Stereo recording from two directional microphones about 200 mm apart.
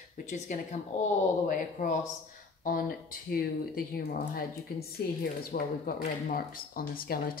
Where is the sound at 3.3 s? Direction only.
50° left (ahead or behind).